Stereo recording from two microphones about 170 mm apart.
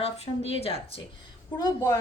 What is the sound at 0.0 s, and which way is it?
Speech, 35° left (ahead or behind).